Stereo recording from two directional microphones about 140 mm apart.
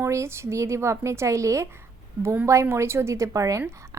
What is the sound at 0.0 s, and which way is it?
A woman's voice, 20° right (ahead or behind).